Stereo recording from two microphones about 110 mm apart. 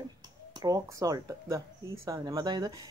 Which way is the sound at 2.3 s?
40° right (ahead or behind).